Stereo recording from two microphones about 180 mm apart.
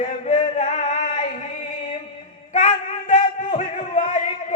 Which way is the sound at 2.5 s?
45° left (ahead or behind).